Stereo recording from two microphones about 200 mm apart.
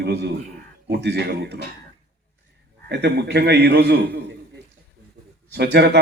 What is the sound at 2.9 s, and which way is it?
A man's voice, 55° right (ahead or behind).